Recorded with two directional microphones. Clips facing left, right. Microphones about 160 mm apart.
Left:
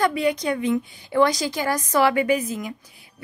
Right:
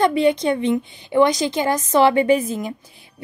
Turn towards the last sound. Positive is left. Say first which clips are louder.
# right 4 dB
turn(degrees=-25)  # may be behind; listen again after turning